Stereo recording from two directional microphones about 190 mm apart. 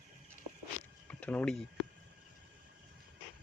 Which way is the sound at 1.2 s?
5° left (ahead or behind).